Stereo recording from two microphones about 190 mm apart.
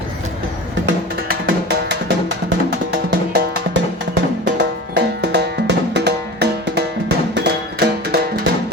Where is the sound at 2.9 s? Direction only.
55° right (ahead or behind).